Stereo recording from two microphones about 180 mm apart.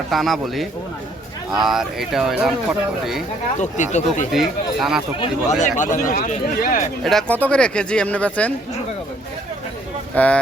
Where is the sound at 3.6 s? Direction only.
40° left (ahead or behind).